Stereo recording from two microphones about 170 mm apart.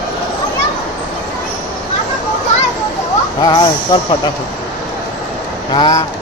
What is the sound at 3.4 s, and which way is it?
Speech, 25° left (ahead or behind).